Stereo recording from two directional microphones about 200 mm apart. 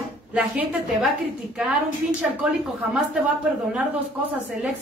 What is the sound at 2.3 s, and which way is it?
Speech, 5° right (ahead or behind).